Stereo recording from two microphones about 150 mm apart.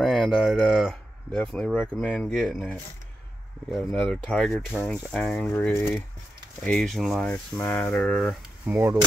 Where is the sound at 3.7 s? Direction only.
Centre (ahead or behind).